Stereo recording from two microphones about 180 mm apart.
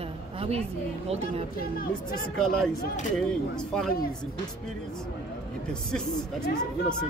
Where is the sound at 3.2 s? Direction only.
5° left (ahead or behind).